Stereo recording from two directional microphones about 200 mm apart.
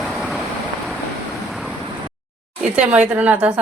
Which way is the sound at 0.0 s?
Centre (ahead or behind).